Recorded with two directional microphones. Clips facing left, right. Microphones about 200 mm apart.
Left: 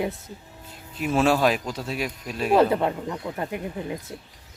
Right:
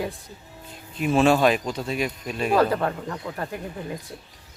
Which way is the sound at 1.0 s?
5° left (ahead or behind).